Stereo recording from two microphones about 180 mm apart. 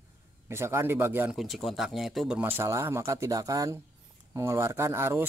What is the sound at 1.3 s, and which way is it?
Speech, centre (ahead or behind).